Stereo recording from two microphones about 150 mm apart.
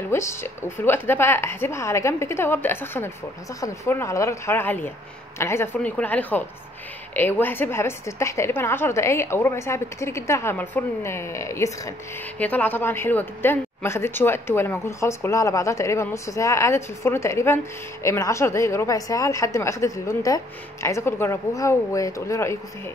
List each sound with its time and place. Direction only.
0.1 s a woman's voice: 15° left (ahead or behind)